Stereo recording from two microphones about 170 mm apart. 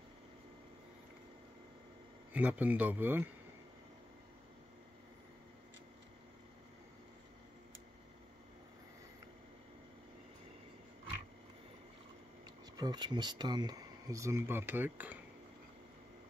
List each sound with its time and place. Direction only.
2.3 s speech: 10° right (ahead or behind)
12.7 s speech: 25° right (ahead or behind)